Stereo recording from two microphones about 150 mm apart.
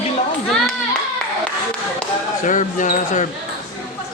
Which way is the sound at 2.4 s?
60° left (ahead or behind).